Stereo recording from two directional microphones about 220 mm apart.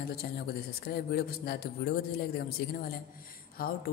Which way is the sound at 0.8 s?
45° left (ahead or behind).